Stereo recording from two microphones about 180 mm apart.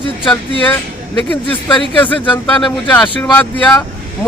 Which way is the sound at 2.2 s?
25° left (ahead or behind).